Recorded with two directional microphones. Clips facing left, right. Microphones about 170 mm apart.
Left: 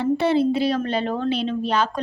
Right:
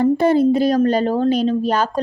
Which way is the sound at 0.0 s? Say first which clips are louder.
Right 5 dB; 45° right (ahead or behind).